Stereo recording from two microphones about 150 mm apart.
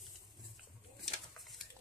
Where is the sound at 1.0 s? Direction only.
Centre (ahead or behind).